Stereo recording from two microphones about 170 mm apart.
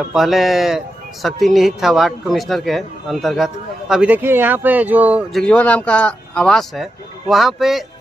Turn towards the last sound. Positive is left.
turn(degrees=0)  # may be behind; listen again after turning